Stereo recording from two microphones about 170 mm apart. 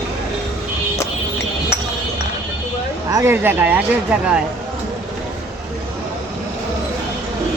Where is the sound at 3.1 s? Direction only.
15° right (ahead or behind).